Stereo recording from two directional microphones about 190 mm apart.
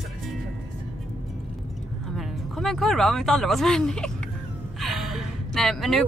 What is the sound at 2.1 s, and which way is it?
Speech, centre (ahead or behind).